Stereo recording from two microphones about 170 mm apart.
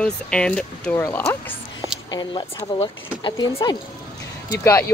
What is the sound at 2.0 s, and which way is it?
Speech, 25° left (ahead or behind).